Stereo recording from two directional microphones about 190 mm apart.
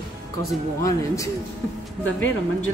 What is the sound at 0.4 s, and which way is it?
Speech, 15° left (ahead or behind).